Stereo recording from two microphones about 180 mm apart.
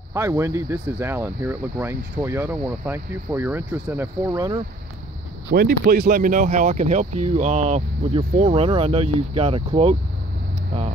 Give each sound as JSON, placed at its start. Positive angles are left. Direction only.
{"t": 0.1, "sound": "speech", "side_deg": -15}
{"t": 5.5, "sound": "speech", "side_deg": -55}